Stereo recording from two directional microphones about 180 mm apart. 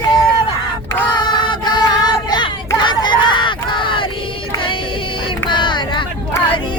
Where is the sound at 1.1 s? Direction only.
25° left (ahead or behind).